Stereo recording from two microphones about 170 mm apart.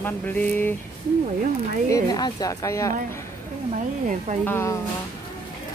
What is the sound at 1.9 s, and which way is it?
A woman's voice, 20° left (ahead or behind).